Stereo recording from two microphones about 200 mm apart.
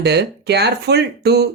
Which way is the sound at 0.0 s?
55° right (ahead or behind).